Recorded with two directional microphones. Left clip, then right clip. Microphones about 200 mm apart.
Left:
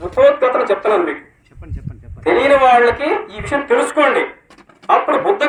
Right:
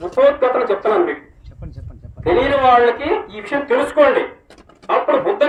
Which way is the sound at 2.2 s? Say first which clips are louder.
Left 3 dB; 25° left (ahead or behind).